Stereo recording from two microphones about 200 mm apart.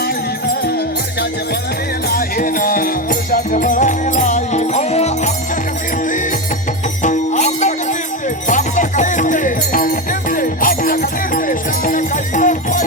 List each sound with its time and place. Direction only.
2.0 s music: 45° left (ahead or behind)
7.0 s music: 35° left (ahead or behind)